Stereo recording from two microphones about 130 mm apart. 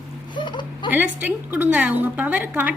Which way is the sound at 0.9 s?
10° right (ahead or behind).